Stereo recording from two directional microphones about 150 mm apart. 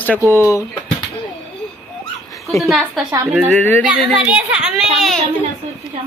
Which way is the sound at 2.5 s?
Centre (ahead or behind).